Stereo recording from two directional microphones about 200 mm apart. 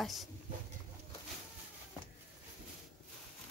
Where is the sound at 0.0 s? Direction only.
Centre (ahead or behind).